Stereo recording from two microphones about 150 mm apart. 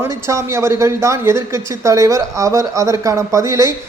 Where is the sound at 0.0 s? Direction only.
20° right (ahead or behind).